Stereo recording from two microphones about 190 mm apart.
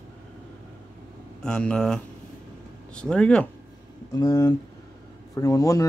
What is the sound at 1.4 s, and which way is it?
Speech, 5° left (ahead or behind).